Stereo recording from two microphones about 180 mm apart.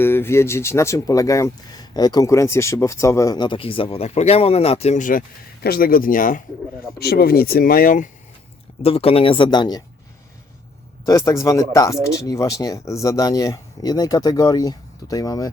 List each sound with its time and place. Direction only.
0.0 s speech: 10° left (ahead or behind); by 5.2 s 45° left (ahead or behind)
5.6 s speech: 55° left (ahead or behind)
7.0 s speech: 60° left (ahead or behind)
8.8 s speech: 35° left (ahead or behind)
11.3 s speech: 15° left (ahead or behind)